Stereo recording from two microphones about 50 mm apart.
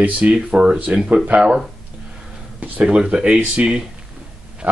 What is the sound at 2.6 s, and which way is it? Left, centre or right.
Speech, right.